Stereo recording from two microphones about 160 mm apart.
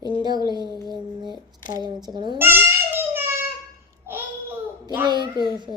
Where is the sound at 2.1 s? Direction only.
30° right (ahead or behind).